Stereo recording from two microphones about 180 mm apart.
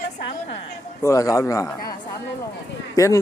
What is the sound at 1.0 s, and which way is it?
Speech, 15° left (ahead or behind).